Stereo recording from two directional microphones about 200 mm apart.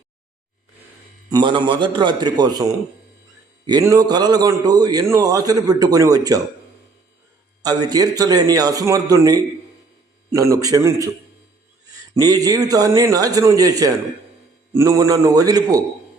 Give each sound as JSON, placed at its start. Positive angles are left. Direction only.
{"t": 1.3, "sound": "a man's voice", "side_deg": -25}
{"t": 3.7, "sound": "a man's voice", "side_deg": -20}
{"t": 7.6, "sound": "a man's voice", "side_deg": -20}
{"t": 12.2, "sound": "a man's voice", "side_deg": -20}